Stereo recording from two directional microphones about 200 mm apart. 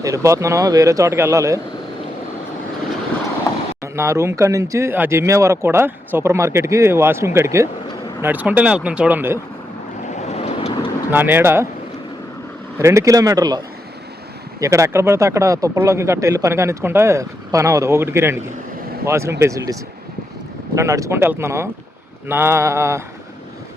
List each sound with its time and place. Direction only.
0.0 s speech: 15° right (ahead or behind)
3.9 s speech: 15° right (ahead or behind)
10.2 s vehicle: 35° left (ahead or behind)
11.1 s speech: 10° right (ahead or behind)
12.8 s speech: 15° right (ahead or behind)
14.6 s speech: 15° right (ahead or behind)
20.7 s speech: 15° right (ahead or behind)